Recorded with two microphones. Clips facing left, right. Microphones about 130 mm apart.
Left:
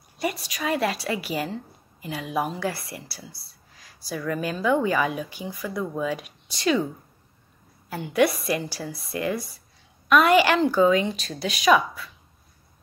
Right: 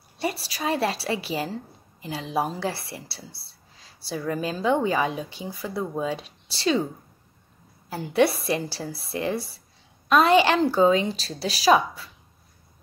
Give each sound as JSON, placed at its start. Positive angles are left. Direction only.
{"t": 0.2, "sound": "a woman's voice", "side_deg": -30}
{"t": 7.9, "sound": "a woman's voice", "side_deg": -30}